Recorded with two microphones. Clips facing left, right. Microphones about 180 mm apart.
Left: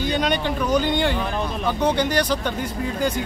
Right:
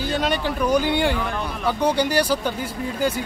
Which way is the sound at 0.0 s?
5° right (ahead or behind).